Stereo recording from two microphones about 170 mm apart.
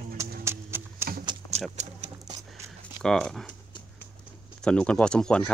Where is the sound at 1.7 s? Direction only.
40° right (ahead or behind).